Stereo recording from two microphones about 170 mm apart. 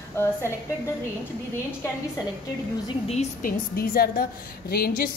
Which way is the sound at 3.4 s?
60° left (ahead or behind).